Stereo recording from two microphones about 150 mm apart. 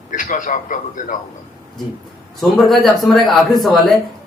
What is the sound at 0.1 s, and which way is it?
A man's voice, 60° left (ahead or behind).